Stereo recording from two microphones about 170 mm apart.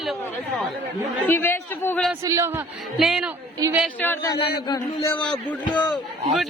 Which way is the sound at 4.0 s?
15° left (ahead or behind).